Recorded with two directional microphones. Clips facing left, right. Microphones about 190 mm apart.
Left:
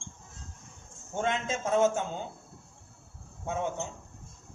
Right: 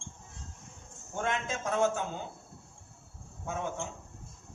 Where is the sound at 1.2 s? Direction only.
20° left (ahead or behind).